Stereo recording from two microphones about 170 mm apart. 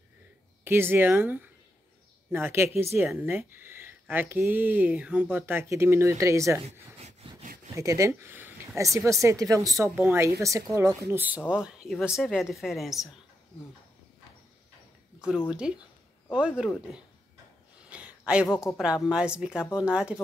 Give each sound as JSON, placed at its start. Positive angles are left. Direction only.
{"t": 0.7, "sound": "speech", "side_deg": -15}
{"t": 6.6, "sound": "a sound", "side_deg": -40}
{"t": 7.7, "sound": "a woman's voice", "side_deg": -15}
{"t": 15.1, "sound": "a woman's voice", "side_deg": -5}
{"t": 17.8, "sound": "a sound", "side_deg": -5}
{"t": 19.0, "sound": "speech", "side_deg": -5}